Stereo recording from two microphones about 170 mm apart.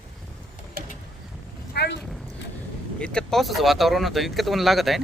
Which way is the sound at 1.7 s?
75° left (ahead or behind).